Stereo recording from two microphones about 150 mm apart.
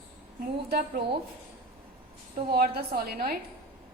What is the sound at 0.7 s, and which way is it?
Speech, 75° right (ahead or behind).